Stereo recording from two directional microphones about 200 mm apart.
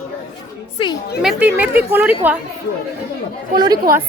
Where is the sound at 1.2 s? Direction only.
5° right (ahead or behind).